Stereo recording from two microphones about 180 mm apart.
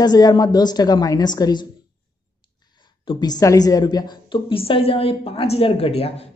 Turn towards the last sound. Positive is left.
turn(degrees=35)  # may be behind; listen again after turning